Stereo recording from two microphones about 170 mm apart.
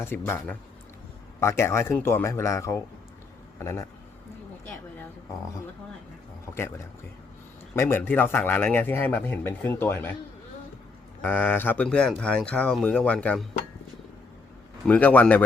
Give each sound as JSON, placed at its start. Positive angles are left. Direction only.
{"t": 0.0, "sound": "a man's voice", "side_deg": 15}
{"t": 6.5, "sound": "a man's voice", "side_deg": 15}
{"t": 11.2, "sound": "a man's voice", "side_deg": 10}
{"t": 14.8, "sound": "a man's voice", "side_deg": 10}